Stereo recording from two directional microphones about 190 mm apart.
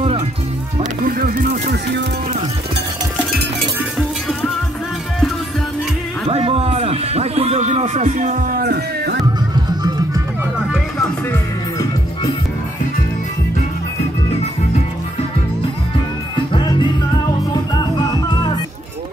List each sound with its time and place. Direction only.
1.0 s music: 50° right (ahead or behind)
6.2 s a sound: 30° right (ahead or behind); by 9.2 s 55° right (ahead or behind)
16.3 s music: 25° left (ahead or behind)